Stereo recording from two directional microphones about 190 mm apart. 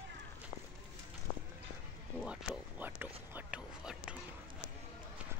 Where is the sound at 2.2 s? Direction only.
5° right (ahead or behind).